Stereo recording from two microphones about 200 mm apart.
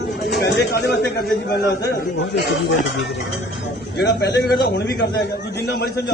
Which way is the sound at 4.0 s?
55° left (ahead or behind).